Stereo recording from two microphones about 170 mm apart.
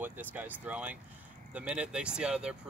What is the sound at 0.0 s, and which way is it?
Speech, 10° right (ahead or behind).